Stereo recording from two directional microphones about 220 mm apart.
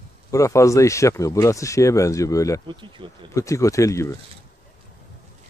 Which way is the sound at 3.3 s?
15° left (ahead or behind).